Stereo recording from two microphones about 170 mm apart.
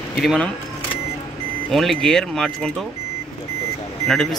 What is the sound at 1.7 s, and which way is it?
Speech, centre (ahead or behind).